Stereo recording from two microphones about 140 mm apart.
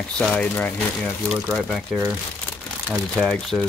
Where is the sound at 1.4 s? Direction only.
Centre (ahead or behind).